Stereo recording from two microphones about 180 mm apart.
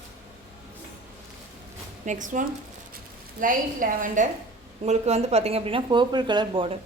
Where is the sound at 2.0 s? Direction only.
45° right (ahead or behind); by 6.7 s 25° right (ahead or behind).